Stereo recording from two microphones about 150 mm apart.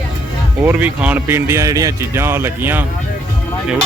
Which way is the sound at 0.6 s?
10° right (ahead or behind).